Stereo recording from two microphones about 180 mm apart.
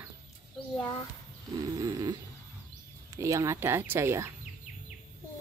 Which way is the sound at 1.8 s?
20° right (ahead or behind).